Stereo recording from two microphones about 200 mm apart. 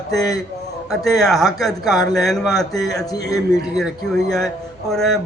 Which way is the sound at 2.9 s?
15° left (ahead or behind).